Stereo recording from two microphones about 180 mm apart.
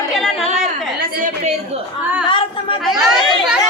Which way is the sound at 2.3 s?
30° left (ahead or behind).